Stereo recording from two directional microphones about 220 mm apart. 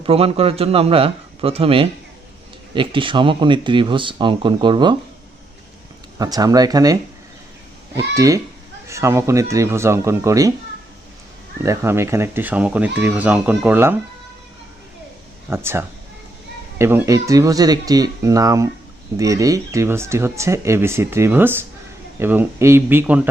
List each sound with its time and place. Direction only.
0.0 s speech: 25° right (ahead or behind)
6.1 s speech: 15° right (ahead or behind)
8.1 s speech: 15° right (ahead or behind)
11.6 s speech: 10° right (ahead or behind)
15.4 s speech: 10° right (ahead or behind)